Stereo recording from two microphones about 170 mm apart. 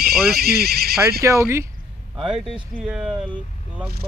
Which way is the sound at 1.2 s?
15° right (ahead or behind).